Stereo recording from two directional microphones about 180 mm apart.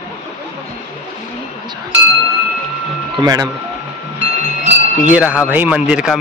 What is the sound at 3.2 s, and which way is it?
Speech, 20° right (ahead or behind).